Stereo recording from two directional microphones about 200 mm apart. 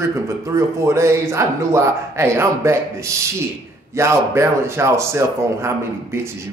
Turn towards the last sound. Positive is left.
turn(degrees=-15)  # may be behind; listen again after turning